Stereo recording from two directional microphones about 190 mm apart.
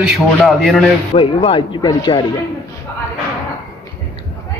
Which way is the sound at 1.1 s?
30° left (ahead or behind).